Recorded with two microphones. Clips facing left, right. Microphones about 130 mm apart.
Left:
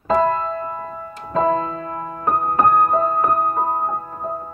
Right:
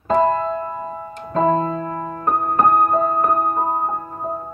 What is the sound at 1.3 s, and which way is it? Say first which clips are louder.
Music: right 1 dB; 35° right (ahead or behind).